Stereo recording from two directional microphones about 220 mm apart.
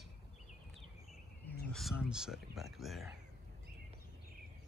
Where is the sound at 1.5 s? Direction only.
Centre (ahead or behind).